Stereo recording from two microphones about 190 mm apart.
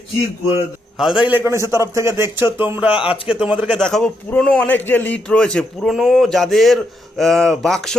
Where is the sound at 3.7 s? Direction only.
5° left (ahead or behind).